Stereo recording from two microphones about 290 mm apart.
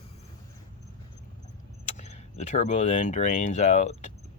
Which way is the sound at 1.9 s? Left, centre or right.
Left.